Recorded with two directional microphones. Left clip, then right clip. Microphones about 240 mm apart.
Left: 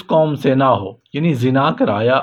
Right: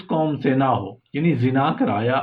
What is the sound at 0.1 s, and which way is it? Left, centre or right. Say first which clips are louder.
A man's voice: left 7 dB; left.